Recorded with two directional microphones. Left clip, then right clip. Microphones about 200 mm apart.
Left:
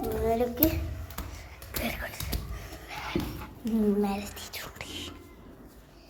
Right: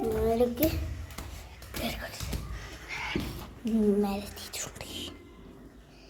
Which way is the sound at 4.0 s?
5° right (ahead or behind).